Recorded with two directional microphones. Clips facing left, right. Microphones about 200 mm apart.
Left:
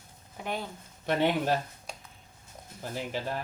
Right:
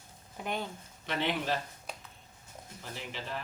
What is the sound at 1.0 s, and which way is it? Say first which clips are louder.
Speech: left 6 dB; 50° left (ahead or behind).